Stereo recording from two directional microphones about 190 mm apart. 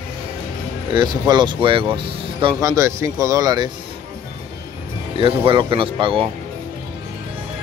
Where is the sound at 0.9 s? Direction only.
25° right (ahead or behind).